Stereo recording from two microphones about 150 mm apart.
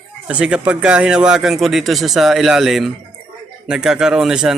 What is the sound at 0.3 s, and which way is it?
A man's voice, 5° right (ahead or behind).